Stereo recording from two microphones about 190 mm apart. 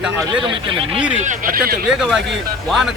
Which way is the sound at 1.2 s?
45° right (ahead or behind).